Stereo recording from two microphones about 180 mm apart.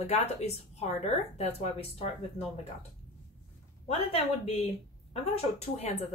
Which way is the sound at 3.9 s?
35° left (ahead or behind).